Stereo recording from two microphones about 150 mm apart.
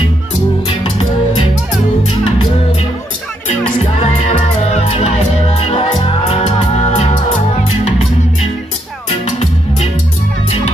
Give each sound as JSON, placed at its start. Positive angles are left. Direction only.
{"t": 0.7, "sound": "music", "side_deg": 40}
{"t": 3.8, "sound": "music", "side_deg": 45}